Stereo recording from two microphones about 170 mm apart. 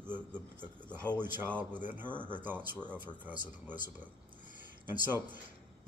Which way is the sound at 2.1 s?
5° left (ahead or behind).